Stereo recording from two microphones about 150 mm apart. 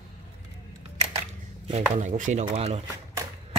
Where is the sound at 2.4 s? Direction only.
40° right (ahead or behind).